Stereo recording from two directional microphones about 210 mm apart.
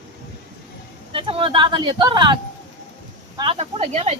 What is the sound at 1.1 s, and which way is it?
Speech, 25° right (ahead or behind).